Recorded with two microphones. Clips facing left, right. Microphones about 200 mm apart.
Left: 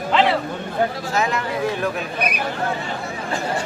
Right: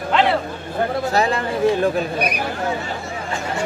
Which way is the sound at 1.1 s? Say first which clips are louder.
Right 3 dB; 35° right (ahead or behind).